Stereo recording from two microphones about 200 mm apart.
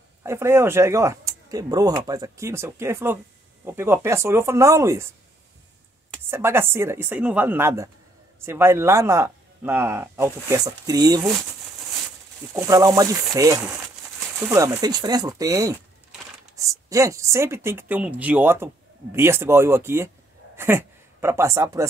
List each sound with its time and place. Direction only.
0.2 s speech: 15° right (ahead or behind)
6.3 s speech: 10° right (ahead or behind)
12.5 s a woman's voice: 15° right (ahead or behind)